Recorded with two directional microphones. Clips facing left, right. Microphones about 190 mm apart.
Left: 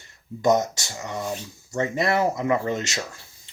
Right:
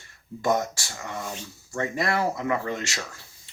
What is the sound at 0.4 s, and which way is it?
Speech, 20° left (ahead or behind).